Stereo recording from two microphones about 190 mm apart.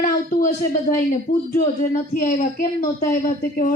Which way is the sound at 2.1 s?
45° left (ahead or behind).